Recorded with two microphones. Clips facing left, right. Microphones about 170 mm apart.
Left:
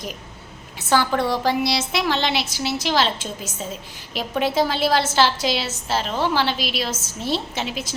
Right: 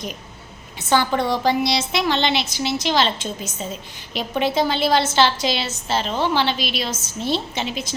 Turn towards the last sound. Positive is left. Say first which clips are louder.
# right 1 dB
turn(degrees=5)  # may be behind; listen again after turning